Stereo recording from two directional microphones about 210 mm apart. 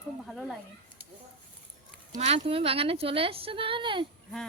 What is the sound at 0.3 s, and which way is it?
Speech, centre (ahead or behind).